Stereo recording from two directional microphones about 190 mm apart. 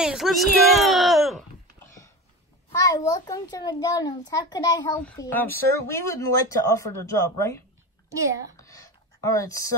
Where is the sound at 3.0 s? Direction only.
20° left (ahead or behind).